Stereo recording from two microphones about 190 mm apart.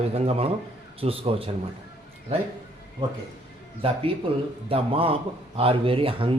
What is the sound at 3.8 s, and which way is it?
A man's voice, 30° right (ahead or behind).